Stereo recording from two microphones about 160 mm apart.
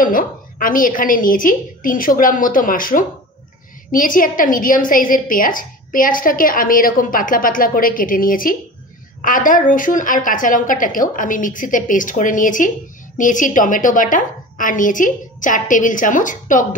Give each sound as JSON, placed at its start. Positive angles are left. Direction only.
{"t": 0.0, "sound": "a woman's voice", "side_deg": 60}